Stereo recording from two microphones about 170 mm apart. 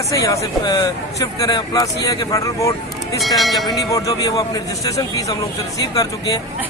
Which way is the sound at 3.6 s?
20° left (ahead or behind).